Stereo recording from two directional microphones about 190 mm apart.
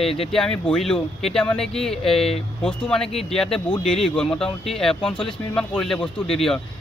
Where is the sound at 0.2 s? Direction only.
Centre (ahead or behind).